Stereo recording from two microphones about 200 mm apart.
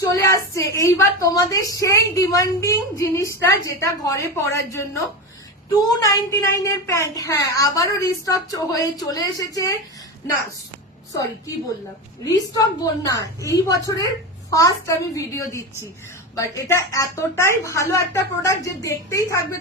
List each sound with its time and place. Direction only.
0.0 s a woman's voice: 15° left (ahead or behind)
12.2 s a woman's voice: 20° left (ahead or behind)